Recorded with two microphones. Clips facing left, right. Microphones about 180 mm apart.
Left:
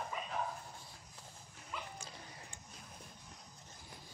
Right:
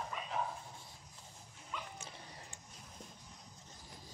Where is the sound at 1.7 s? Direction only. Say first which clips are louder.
Even; 5° left (ahead or behind).